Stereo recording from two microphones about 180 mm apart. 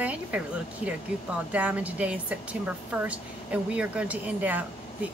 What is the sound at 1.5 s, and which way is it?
Speech, 10° right (ahead or behind).